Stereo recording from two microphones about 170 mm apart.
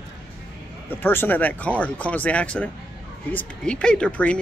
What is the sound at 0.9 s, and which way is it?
Speech, 10° left (ahead or behind).